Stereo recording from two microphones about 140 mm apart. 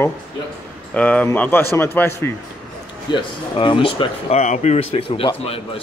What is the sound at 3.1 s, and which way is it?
Speech, 40° left (ahead or behind).